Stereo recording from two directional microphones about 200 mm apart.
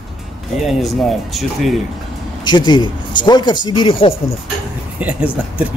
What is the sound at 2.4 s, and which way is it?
Speech, 20° left (ahead or behind).